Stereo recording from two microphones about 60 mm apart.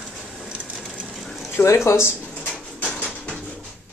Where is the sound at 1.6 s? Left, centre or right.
Left.